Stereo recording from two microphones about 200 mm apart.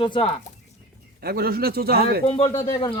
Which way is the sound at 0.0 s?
25° left (ahead or behind).